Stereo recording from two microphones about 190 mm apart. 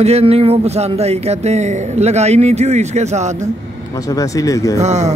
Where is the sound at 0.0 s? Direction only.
35° right (ahead or behind).